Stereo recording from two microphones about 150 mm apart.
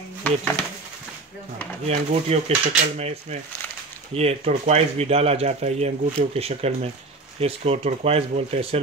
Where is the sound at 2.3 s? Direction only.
45° right (ahead or behind).